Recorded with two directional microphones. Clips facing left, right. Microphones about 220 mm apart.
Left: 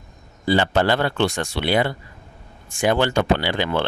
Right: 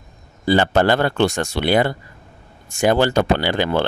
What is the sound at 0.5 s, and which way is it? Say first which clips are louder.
Speech: right 3 dB; 45° right (ahead or behind).